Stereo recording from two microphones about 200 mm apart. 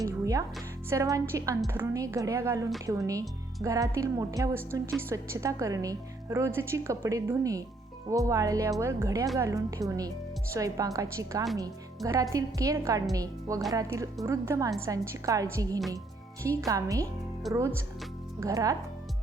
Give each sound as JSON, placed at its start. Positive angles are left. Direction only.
{"t": 0.0, "sound": "speech", "side_deg": -15}